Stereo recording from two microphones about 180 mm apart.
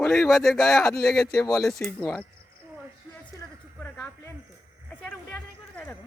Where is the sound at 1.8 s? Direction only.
10° left (ahead or behind).